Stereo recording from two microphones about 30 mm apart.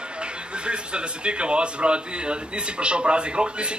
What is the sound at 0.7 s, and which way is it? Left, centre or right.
Speech, right.